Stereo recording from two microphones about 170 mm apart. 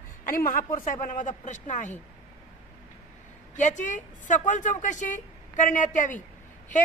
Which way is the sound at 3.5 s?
45° left (ahead or behind).